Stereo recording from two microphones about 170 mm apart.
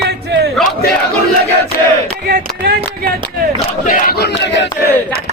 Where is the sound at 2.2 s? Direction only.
65° right (ahead or behind).